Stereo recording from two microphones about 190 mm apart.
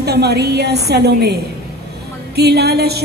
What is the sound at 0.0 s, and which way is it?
A woman's voice, 60° right (ahead or behind).